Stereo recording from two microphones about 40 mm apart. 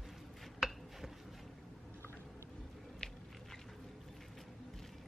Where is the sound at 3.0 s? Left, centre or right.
Left.